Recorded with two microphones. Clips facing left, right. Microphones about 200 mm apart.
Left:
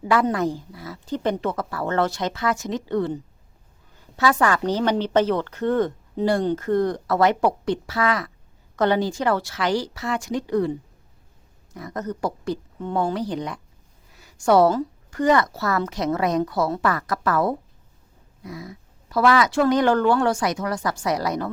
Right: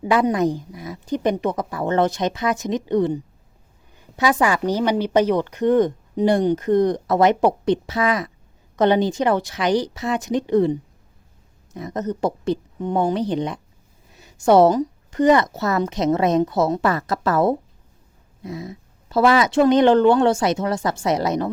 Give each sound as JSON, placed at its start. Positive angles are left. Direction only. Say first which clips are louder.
{"t": 0.0, "sound": "a woman's voice", "louder": "right 3 dB", "side_deg": -20}